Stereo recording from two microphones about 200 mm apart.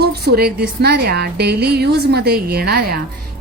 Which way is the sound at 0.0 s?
55° right (ahead or behind).